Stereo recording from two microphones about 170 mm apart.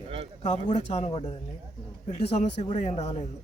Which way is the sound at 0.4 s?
40° left (ahead or behind).